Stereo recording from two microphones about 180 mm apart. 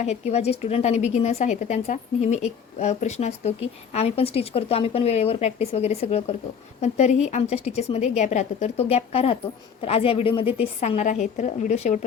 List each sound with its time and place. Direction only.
0.0 s a woman's voice: 35° left (ahead or behind)